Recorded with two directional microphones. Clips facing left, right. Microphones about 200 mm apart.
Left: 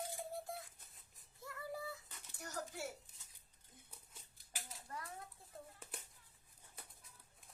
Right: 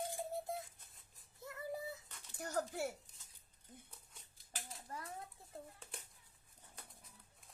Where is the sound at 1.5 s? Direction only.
20° right (ahead or behind).